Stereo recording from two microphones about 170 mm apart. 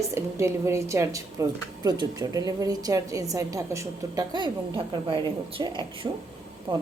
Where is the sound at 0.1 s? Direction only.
15° right (ahead or behind).